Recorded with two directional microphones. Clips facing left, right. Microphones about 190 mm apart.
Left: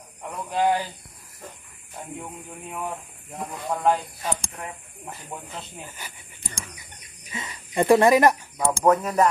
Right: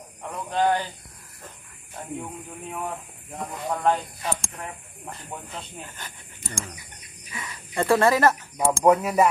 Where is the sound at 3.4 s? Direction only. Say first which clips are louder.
Even; centre (ahead or behind).